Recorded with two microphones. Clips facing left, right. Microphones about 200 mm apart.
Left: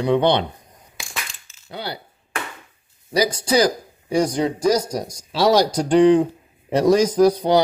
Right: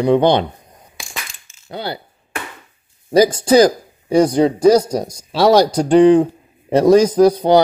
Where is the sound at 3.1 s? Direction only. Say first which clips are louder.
Right 8 dB; 50° right (ahead or behind).